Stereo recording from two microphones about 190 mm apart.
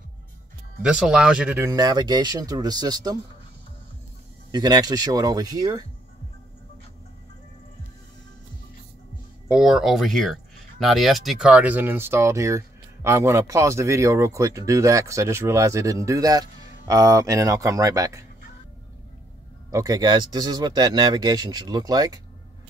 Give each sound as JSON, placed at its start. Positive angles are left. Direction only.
{"t": 0.8, "sound": "speech", "side_deg": -5}
{"t": 4.5, "sound": "speech", "side_deg": -20}
{"t": 9.5, "sound": "speech", "side_deg": -5}
{"t": 19.7, "sound": "speech", "side_deg": -20}